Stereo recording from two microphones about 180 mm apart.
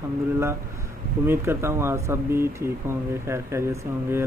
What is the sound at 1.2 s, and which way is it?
Speech, 15° right (ahead or behind).